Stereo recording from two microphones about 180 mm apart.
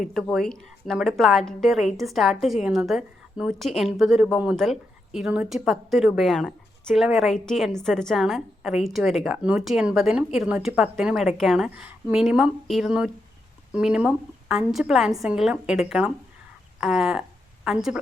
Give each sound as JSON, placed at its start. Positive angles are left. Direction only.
{"t": 0.1, "sound": "a woman's voice", "side_deg": 0}